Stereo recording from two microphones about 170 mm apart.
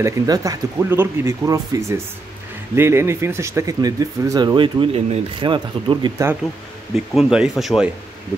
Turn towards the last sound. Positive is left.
turn(degrees=0)  # may be behind; listen again after turning